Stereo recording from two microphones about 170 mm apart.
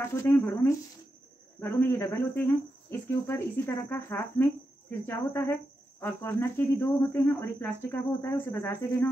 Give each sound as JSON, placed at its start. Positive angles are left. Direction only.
{"t": 0.0, "sound": "speech", "side_deg": 15}